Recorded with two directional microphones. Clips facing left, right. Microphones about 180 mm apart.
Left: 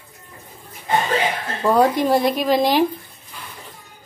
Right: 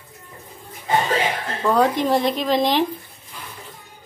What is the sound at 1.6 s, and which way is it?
A woman's voice, 10° left (ahead or behind).